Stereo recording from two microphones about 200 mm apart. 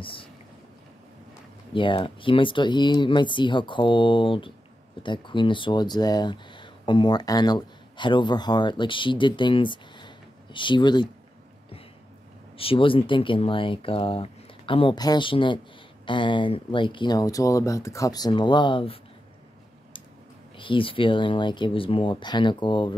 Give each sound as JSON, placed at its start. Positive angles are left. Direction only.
{"t": 0.0, "sound": "boat", "side_deg": 25}
{"t": 1.7, "sound": "speech", "side_deg": 25}
{"t": 12.5, "sound": "speech", "side_deg": 25}
{"t": 20.5, "sound": "speech", "side_deg": 25}